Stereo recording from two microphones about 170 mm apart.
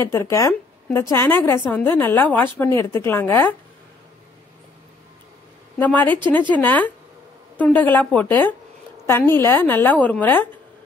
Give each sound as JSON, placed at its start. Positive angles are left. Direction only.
{"t": 0.0, "sound": "a woman's voice", "side_deg": 15}
{"t": 5.8, "sound": "a woman's voice", "side_deg": 10}